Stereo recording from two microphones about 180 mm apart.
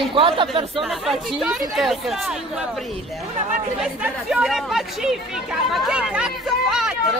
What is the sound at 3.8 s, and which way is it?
Speech, centre (ahead or behind).